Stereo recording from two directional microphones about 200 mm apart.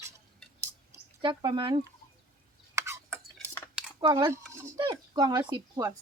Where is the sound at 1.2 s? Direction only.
25° right (ahead or behind).